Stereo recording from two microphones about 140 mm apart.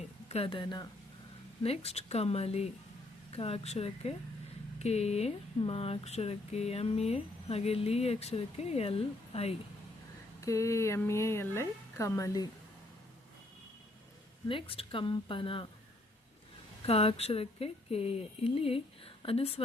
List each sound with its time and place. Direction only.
0.3 s speech: 45° left (ahead or behind)
1.6 s speech: 45° left (ahead or behind)
10.4 s speech: 20° left (ahead or behind)
14.4 s speech: 40° left (ahead or behind)
16.8 s speech: 45° left (ahead or behind)